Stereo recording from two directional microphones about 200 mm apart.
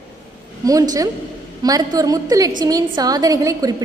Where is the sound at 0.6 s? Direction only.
15° right (ahead or behind).